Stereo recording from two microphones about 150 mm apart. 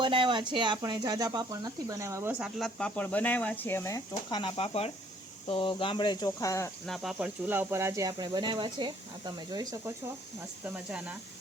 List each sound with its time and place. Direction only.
0.0 s speech: 35° right (ahead or behind)
2.4 s speech: centre (ahead or behind)
4.3 s speech: 30° left (ahead or behind)
6.8 s speech: centre (ahead or behind); by 9.9 s 25° right (ahead or behind)